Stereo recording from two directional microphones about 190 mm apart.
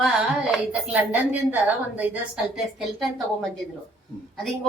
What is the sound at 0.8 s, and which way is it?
A woman's voice, 10° right (ahead or behind).